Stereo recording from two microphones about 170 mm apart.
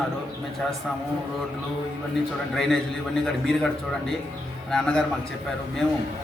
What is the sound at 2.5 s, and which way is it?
Speech, centre (ahead or behind).